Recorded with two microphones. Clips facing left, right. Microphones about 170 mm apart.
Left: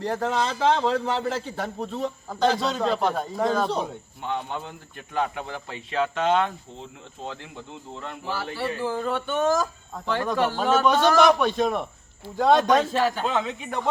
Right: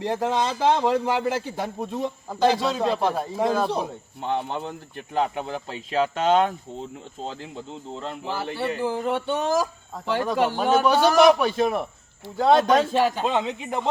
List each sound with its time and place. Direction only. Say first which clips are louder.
0.0 s a man's voice: right 1 dB; 15° right (ahead or behind)
4.2 s speech: right 3 dB; 30° right (ahead or behind)
7.3 s speech: right 2 dB; 25° right (ahead or behind)
9.9 s a man's voice: right 1 dB; 10° right (ahead or behind)